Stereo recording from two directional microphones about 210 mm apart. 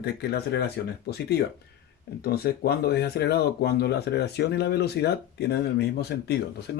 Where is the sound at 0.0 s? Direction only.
50° left (ahead or behind).